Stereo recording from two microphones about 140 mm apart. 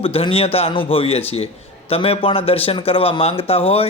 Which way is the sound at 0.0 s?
45° left (ahead or behind).